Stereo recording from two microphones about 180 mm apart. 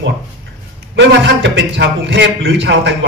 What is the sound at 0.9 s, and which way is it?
A man's voice, 85° right.